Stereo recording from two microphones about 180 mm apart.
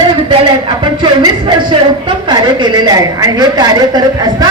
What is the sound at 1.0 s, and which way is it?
Speech, 25° right (ahead or behind).